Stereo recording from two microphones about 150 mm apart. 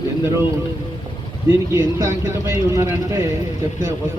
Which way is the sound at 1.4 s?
20° right (ahead or behind).